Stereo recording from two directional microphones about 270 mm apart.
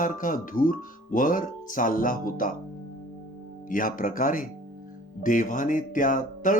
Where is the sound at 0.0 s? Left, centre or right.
Left.